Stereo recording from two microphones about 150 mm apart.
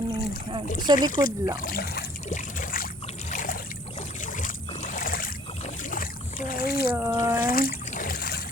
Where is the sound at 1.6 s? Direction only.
85° left.